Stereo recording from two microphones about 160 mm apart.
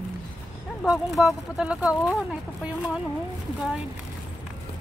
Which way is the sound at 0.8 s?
Centre (ahead or behind).